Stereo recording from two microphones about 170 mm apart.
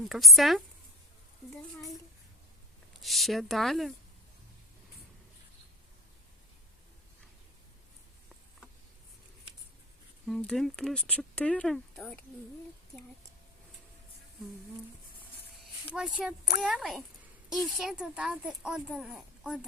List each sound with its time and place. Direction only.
0.0 s speech: centre (ahead or behind)
3.0 s speech: centre (ahead or behind)
10.2 s speech: centre (ahead or behind)
16.0 s speech: 5° right (ahead or behind)